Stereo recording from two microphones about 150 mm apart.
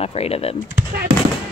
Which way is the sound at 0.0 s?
40° left (ahead or behind).